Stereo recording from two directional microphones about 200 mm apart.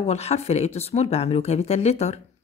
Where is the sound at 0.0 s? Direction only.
30° left (ahead or behind).